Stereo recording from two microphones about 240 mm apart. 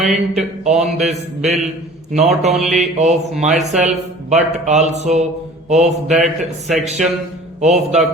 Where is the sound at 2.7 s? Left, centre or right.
Right.